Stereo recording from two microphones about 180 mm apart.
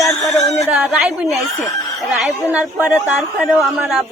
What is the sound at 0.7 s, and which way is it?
Speech, centre (ahead or behind).